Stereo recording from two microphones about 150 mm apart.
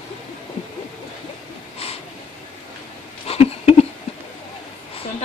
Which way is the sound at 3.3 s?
45° left (ahead or behind).